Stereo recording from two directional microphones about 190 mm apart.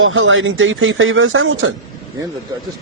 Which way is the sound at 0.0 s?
90° right.